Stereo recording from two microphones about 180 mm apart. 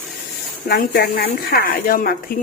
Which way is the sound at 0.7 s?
55° left (ahead or behind).